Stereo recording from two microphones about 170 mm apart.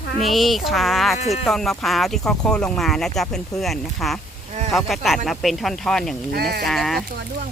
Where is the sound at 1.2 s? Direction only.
40° left (ahead or behind).